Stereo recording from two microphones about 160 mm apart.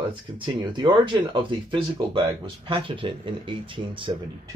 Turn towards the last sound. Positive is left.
turn(degrees=-30)  # may be behind; listen again after turning